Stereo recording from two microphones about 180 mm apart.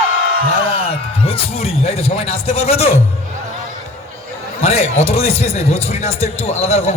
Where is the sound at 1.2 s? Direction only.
35° left (ahead or behind).